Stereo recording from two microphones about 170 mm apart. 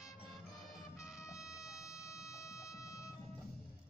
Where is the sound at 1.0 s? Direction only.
5° right (ahead or behind).